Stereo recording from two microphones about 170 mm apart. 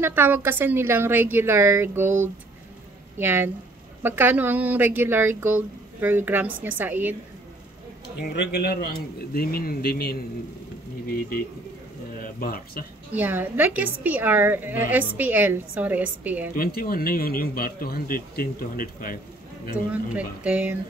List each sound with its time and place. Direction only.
0.0 s a woman's voice: 10° right (ahead or behind)
3.2 s a woman's voice: 15° right (ahead or behind)
8.2 s a man's voice: 75° left (ahead or behind)
9.3 s speech: 60° left (ahead or behind)
12.4 s speech: 60° left (ahead or behind)
13.1 s a woman's voice: 10° right (ahead or behind)
16.5 s speech: 60° left (ahead or behind)
19.9 s a woman's voice: 10° right (ahead or behind)